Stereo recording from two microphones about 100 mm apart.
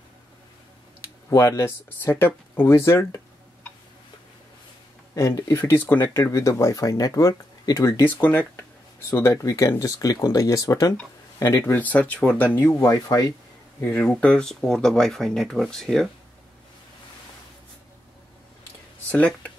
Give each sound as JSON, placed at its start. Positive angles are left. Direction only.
{"t": 1.3, "sound": "speech", "side_deg": 30}
{"t": 5.1, "sound": "speech", "side_deg": 35}
{"t": 8.0, "sound": "speech", "side_deg": 15}
{"t": 9.1, "sound": "speech", "side_deg": 30}
{"t": 11.6, "sound": "speech", "side_deg": 20}
{"t": 12.8, "sound": "speech", "side_deg": 35}
{"t": 13.7, "sound": "speech", "side_deg": 15}
{"t": 19.0, "sound": "speech", "side_deg": 15}